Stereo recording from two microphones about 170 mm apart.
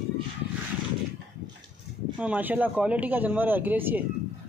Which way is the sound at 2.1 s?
10° right (ahead or behind).